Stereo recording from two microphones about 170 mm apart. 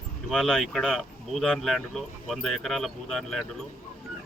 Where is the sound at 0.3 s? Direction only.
Centre (ahead or behind).